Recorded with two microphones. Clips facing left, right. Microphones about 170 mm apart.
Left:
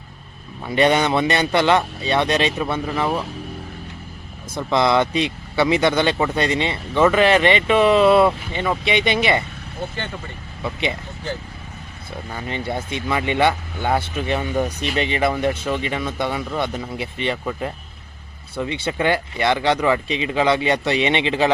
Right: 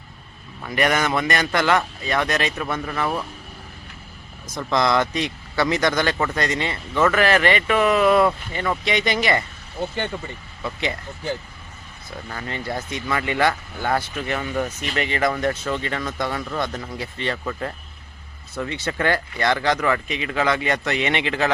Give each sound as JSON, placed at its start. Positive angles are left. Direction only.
{"t": 0.6, "sound": "speech", "side_deg": 20}
{"t": 4.7, "sound": "speech", "side_deg": 20}
{"t": 10.6, "sound": "speech", "side_deg": 20}
{"t": 12.3, "sound": "speech", "side_deg": 15}